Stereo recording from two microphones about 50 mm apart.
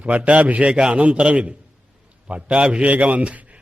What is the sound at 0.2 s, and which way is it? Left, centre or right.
Speech, right.